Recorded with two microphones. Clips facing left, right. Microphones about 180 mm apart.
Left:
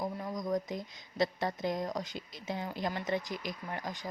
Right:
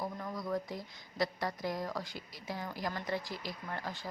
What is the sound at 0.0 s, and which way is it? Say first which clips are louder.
A woman's voice: left 3 dB; 15° left (ahead or behind).